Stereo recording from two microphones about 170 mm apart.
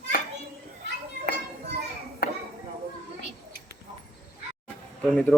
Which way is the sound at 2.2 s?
70° left (ahead or behind).